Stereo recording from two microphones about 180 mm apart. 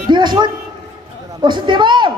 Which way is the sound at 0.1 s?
25° right (ahead or behind).